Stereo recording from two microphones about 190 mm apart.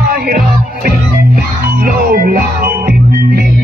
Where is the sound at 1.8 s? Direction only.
50° right (ahead or behind).